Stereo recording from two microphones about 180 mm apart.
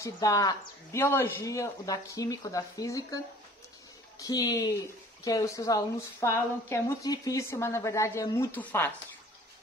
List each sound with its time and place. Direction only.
0.0 s speech: 20° left (ahead or behind)
4.2 s speech: 20° left (ahead or behind)